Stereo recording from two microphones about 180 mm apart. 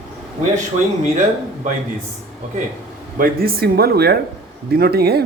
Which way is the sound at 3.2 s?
55° right (ahead or behind).